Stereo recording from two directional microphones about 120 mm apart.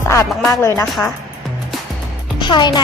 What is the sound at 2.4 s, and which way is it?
Speech, 40° left (ahead or behind).